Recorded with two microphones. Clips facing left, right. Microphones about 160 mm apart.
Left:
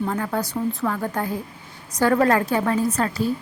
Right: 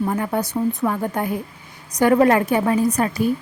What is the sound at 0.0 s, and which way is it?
A woman's voice, 15° right (ahead or behind).